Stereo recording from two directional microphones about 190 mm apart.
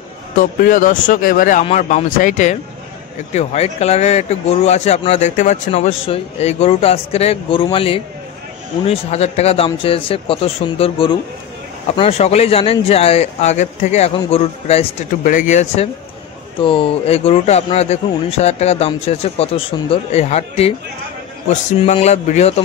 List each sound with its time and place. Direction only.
0.4 s a man's voice: 45° left (ahead or behind)